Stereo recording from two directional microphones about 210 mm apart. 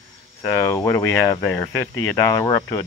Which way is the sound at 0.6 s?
15° left (ahead or behind).